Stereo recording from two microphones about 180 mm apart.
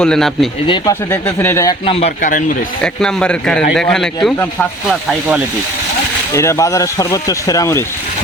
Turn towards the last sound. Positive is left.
turn(degrees=15)  # may be behind; listen again after turning